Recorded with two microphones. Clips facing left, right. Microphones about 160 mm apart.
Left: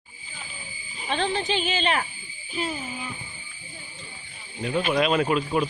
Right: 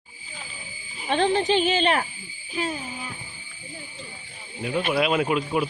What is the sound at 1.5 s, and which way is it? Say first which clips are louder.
Speech: right 4 dB; 50° right (ahead or behind).